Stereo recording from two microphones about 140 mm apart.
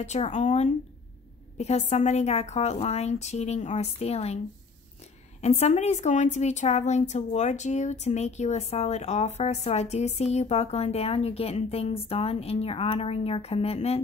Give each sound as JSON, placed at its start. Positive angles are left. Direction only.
{"t": 0.0, "sound": "a woman's voice", "side_deg": 55}
{"t": 5.4, "sound": "a woman's voice", "side_deg": 50}